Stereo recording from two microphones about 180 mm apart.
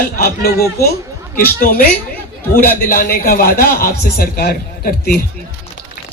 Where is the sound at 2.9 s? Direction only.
55° left (ahead or behind).